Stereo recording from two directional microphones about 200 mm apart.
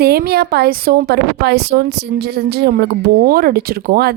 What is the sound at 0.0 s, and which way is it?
A woman's voice, 50° right (ahead or behind).